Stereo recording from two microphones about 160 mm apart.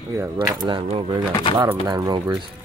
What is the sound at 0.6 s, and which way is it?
Speech, 35° right (ahead or behind).